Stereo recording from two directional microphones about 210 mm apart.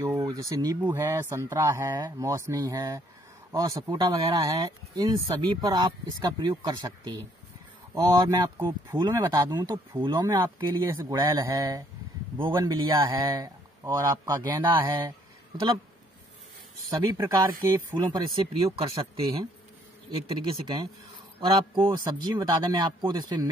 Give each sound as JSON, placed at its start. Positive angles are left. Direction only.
{"t": 0.0, "sound": "speech", "side_deg": -15}
{"t": 17.0, "sound": "speech", "side_deg": -15}
{"t": 20.3, "sound": "speech", "side_deg": -20}